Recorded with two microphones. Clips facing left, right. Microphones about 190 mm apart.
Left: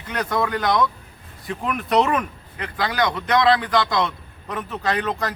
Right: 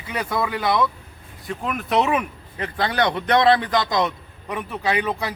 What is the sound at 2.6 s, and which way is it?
A man's voice, 25° right (ahead or behind).